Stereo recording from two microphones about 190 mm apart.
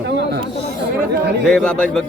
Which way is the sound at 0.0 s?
65° right (ahead or behind).